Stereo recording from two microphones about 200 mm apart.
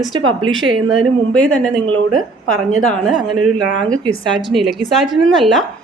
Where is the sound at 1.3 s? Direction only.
5° left (ahead or behind).